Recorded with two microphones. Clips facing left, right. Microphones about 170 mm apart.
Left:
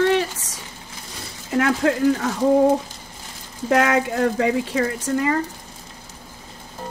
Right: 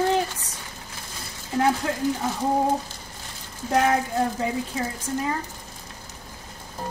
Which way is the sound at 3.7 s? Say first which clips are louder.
Left 3 dB; 90° left.